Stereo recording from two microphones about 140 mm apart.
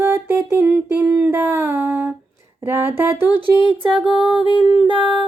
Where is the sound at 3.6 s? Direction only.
35° left (ahead or behind).